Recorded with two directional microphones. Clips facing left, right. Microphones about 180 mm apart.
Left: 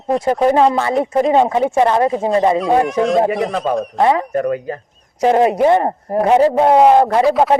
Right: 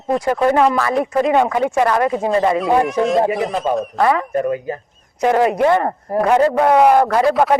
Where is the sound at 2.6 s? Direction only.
Centre (ahead or behind).